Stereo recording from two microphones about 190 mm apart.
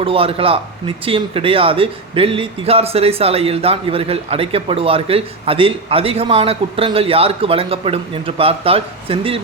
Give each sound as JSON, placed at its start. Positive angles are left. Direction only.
{"t": 0.0, "sound": "speech", "side_deg": -30}